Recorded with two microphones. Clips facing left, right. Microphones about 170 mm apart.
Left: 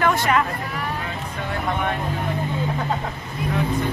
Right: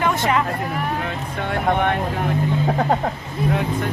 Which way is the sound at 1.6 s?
65° right (ahead or behind).